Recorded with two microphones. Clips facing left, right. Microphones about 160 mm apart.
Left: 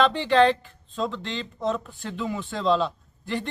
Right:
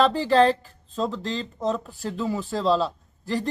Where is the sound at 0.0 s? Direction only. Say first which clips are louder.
Right 1 dB; 40° right (ahead or behind).